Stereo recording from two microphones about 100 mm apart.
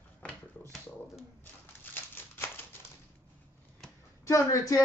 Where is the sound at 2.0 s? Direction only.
20° left (ahead or behind).